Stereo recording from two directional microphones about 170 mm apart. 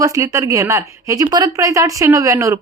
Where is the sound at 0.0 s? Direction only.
20° right (ahead or behind).